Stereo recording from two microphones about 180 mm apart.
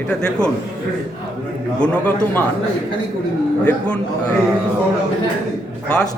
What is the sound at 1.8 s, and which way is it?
Speech, 10° left (ahead or behind).